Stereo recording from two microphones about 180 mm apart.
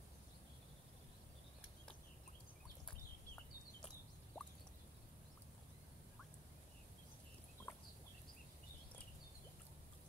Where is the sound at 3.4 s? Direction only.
5° left (ahead or behind).